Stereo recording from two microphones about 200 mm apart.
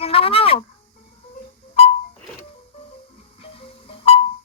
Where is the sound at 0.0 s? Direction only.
30° left (ahead or behind).